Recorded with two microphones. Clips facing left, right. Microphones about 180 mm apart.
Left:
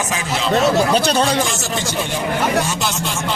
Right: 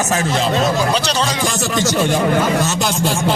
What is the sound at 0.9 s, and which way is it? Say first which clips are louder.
Speech: left 3 dB; 50° left (ahead or behind).